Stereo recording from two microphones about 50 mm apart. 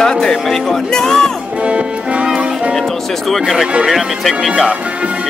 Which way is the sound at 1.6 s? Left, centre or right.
Right.